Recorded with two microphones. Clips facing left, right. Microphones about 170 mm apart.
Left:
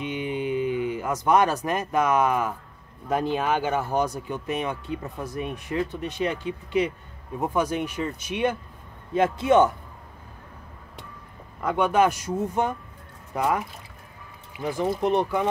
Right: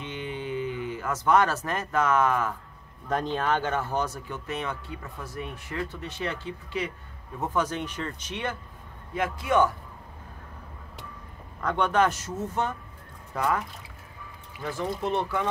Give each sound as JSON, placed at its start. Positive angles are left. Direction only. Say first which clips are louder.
{"t": 0.0, "sound": "speech", "louder": "left 6 dB", "side_deg": 15}
{"t": 9.1, "sound": "a man's voice", "louder": "left 6 dB", "side_deg": 25}
{"t": 11.6, "sound": "speech", "louder": "left 3 dB", "side_deg": 10}